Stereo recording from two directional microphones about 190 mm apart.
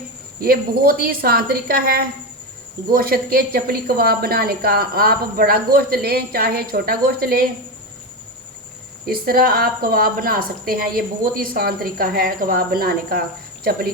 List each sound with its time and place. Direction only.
0.4 s a woman's voice: 50° right (ahead or behind)
9.0 s a woman's voice: 50° right (ahead or behind)